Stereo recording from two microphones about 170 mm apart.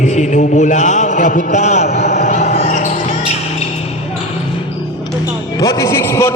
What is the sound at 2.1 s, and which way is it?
Basketball bounce, 40° left (ahead or behind).